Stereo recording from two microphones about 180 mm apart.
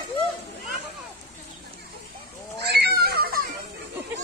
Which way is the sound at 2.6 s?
65° right (ahead or behind).